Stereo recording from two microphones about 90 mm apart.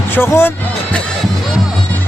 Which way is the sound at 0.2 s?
25° left (ahead or behind).